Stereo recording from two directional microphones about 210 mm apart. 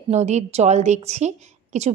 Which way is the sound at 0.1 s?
30° right (ahead or behind).